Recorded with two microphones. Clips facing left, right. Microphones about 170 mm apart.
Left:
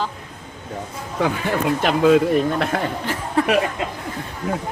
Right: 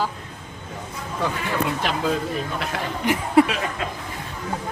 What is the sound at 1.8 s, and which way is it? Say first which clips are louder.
Speech: left 9 dB; 55° left (ahead or behind).